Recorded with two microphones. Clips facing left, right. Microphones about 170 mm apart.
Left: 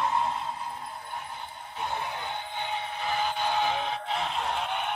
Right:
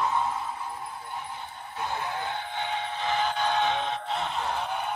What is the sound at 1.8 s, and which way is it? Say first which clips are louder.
Vehicle: right 2 dB; 15° left (ahead or behind).